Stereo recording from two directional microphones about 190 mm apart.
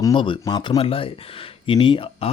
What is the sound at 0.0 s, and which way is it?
Speech, 25° left (ahead or behind).